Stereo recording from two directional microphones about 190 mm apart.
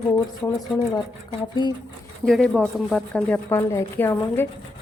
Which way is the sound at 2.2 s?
5° left (ahead or behind).